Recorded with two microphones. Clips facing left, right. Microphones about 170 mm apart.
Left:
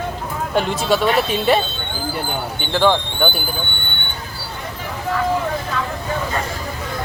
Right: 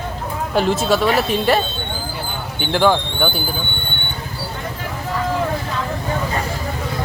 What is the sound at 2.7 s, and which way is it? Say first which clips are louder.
Speech: right 1 dB; 10° right (ahead or behind).